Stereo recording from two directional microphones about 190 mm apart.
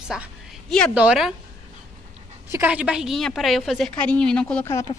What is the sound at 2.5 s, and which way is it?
A woman's voice, 10° right (ahead or behind).